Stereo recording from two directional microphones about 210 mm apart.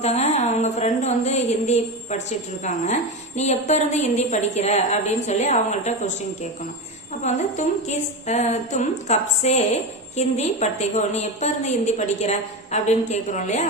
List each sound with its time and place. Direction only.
0.0 s a sound: 30° left (ahead or behind)
2.6 s a woman's voice: 35° left (ahead or behind)
7.3 s a woman's voice: 35° left (ahead or behind)